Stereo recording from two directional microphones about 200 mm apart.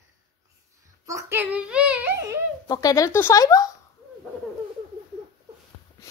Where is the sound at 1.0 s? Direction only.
15° right (ahead or behind).